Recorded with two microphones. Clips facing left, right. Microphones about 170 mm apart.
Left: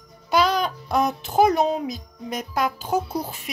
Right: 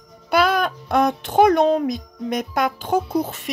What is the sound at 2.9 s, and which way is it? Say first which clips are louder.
Speech: right 3 dB; 55° right (ahead or behind).